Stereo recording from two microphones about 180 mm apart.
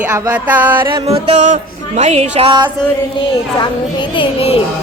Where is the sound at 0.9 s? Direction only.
35° right (ahead or behind).